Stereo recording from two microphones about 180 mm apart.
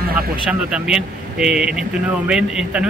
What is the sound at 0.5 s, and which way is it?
Speech, 5° right (ahead or behind).